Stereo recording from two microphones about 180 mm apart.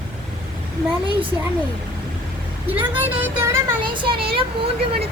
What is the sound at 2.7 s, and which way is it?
Speech, 10° right (ahead or behind).